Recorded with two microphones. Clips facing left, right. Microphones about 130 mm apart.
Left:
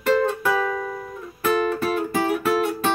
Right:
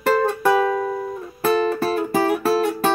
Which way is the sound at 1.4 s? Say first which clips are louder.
Right 2 dB; 35° right (ahead or behind).